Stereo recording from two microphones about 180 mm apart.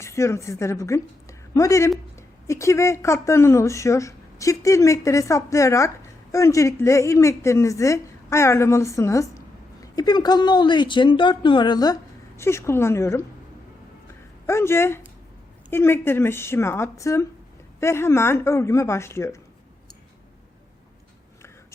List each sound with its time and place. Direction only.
0.0 s a woman's voice: 15° left (ahead or behind)
14.4 s speech: 15° left (ahead or behind)